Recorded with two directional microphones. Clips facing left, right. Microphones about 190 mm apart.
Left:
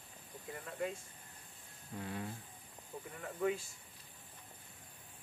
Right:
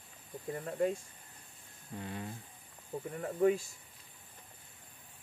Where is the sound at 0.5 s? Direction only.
40° right (ahead or behind).